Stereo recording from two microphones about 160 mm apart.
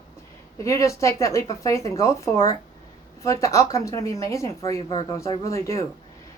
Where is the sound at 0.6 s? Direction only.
20° left (ahead or behind).